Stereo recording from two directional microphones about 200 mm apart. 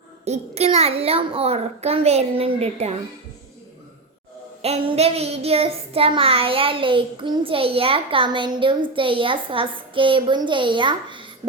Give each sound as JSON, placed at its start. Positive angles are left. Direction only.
{"t": 0.3, "sound": "a child's voice", "side_deg": -30}
{"t": 4.6, "sound": "child singing", "side_deg": -30}